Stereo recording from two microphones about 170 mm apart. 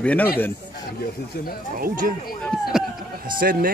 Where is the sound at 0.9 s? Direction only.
65° left (ahead or behind).